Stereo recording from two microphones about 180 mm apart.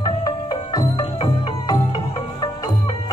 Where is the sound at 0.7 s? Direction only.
25° left (ahead or behind).